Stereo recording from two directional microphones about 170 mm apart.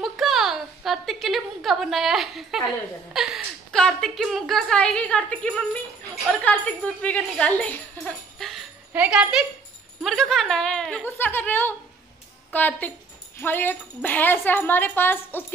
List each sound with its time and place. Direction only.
0.0 s a woman's voice: centre (ahead or behind)